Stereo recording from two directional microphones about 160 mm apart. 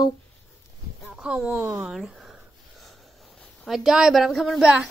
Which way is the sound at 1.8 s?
5° right (ahead or behind).